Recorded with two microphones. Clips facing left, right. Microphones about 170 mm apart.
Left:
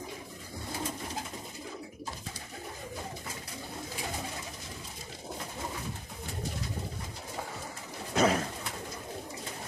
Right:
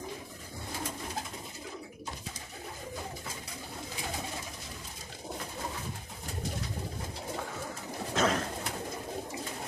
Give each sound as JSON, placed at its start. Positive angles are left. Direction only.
{"t": 8.1, "sound": "bird", "side_deg": 5}